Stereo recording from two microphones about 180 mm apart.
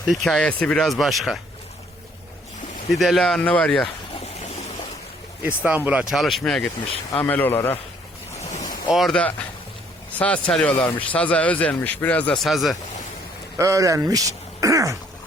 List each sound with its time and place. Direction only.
0.1 s speech: centre (ahead or behind)
2.9 s speech: centre (ahead or behind)
5.4 s speech: 10° right (ahead or behind); by 7.8 s 10° left (ahead or behind)
8.5 s boat: 45° left (ahead or behind)
8.9 s speech: centre (ahead or behind)
13.6 s speech: 15° right (ahead or behind)